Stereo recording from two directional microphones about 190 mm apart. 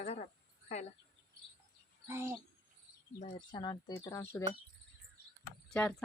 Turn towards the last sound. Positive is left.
turn(degrees=5)  # may be behind; listen again after turning